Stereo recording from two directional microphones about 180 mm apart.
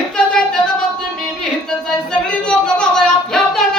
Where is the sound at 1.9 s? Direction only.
5° left (ahead or behind).